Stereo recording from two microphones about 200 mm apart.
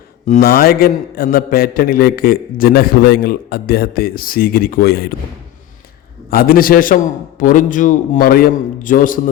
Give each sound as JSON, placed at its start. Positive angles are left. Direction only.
{"t": 0.3, "sound": "a man's voice", "side_deg": 45}
{"t": 6.3, "sound": "a man's voice", "side_deg": 45}